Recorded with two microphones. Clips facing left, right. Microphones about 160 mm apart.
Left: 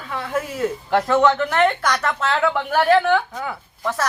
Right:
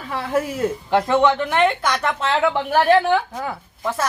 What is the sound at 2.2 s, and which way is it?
Speech, 25° right (ahead or behind).